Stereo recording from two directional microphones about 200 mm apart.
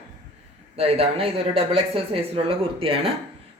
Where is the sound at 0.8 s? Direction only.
30° right (ahead or behind).